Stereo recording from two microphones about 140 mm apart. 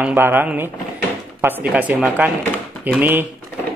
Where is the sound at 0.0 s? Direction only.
15° right (ahead or behind).